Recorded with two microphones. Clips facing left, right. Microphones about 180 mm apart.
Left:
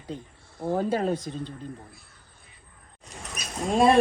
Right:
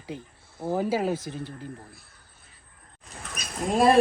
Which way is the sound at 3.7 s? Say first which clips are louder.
Even; centre (ahead or behind).